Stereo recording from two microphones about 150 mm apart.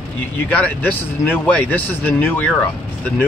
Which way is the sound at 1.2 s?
10° left (ahead or behind).